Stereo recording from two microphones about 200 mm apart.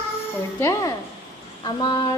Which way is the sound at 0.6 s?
15° left (ahead or behind).